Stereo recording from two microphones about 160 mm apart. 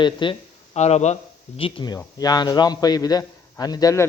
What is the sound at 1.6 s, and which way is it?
A man's voice, 30° left (ahead or behind).